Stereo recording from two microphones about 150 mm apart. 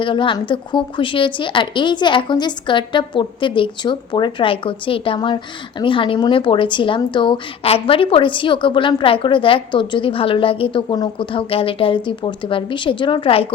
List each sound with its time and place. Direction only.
0.0 s a woman's voice: 35° left (ahead or behind)